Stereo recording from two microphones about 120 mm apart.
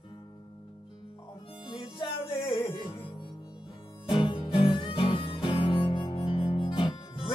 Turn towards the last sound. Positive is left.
turn(degrees=45)  # may be behind; listen again after turning